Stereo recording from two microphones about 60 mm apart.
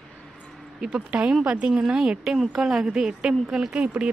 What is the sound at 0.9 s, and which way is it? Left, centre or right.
A woman's voice, right.